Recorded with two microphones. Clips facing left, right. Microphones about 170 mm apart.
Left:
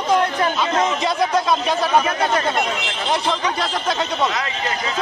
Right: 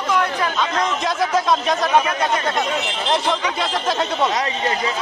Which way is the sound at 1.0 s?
Centre (ahead or behind).